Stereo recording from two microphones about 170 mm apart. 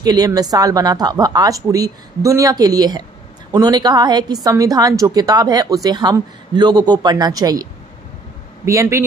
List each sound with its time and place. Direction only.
0.0 s a woman's voice: 20° right (ahead or behind)
8.6 s a man's voice: 15° right (ahead or behind)